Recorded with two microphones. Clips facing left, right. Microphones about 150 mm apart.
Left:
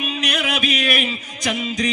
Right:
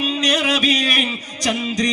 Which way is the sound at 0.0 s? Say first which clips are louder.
Right 4 dB; 35° right (ahead or behind).